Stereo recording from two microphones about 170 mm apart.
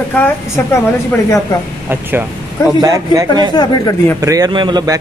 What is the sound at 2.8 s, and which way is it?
Speech, 20° right (ahead or behind).